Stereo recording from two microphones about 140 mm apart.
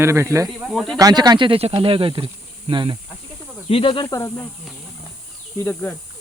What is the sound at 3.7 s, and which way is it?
Speech, 40° left (ahead or behind).